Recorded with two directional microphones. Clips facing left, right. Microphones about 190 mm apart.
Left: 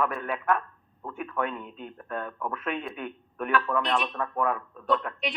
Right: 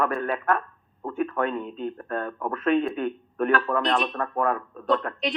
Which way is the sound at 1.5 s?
35° right (ahead or behind).